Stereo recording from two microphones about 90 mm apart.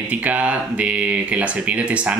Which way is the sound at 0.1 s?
15° right (ahead or behind).